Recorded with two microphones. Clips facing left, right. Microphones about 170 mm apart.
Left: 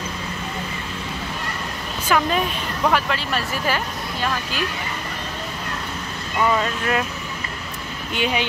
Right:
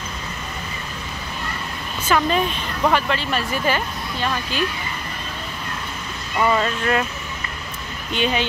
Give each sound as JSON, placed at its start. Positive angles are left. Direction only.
{"t": 2.0, "sound": "speech", "side_deg": 5}
{"t": 6.5, "sound": "speech", "side_deg": 0}
{"t": 8.1, "sound": "speech", "side_deg": 10}